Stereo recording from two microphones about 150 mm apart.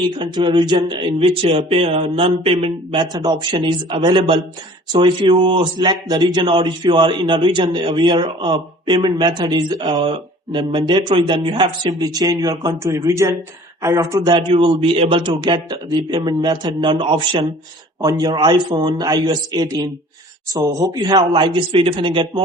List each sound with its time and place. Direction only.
0.2 s a man's voice: 30° right (ahead or behind)
3.0 s a man's voice: 25° right (ahead or behind)